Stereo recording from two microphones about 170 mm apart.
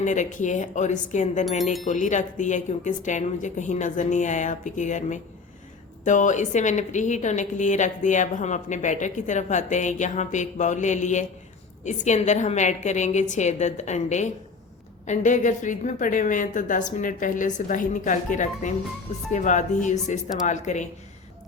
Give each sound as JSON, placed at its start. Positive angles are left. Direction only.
{"t": 0.0, "sound": "a woman's voice", "side_deg": 45}